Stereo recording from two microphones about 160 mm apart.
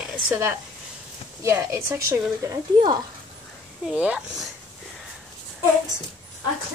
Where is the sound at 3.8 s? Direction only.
5° right (ahead or behind).